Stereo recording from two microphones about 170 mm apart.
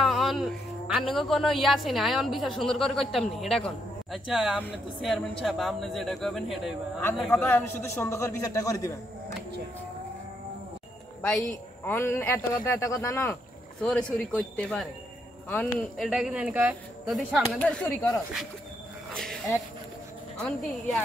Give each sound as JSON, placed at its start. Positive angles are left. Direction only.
{"t": 0.0, "sound": "music", "side_deg": 0}
{"t": 1.1, "sound": "a woman's voice", "side_deg": 0}
{"t": 11.2, "sound": "a woman's voice", "side_deg": 5}
{"t": 17.6, "sound": "speech", "side_deg": 10}
{"t": 19.1, "sound": "a woman's voice", "side_deg": 0}